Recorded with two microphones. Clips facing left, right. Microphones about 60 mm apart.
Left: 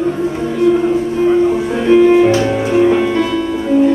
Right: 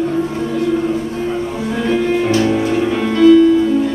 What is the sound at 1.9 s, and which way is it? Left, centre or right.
Music, left.